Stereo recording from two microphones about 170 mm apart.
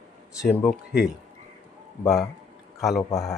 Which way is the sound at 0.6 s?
Centre (ahead or behind).